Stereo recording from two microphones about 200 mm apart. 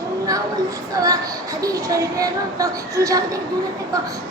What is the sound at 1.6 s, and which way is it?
A woman's voice, 15° right (ahead or behind).